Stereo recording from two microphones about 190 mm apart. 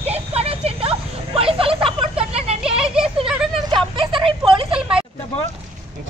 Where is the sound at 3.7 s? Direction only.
25° right (ahead or behind).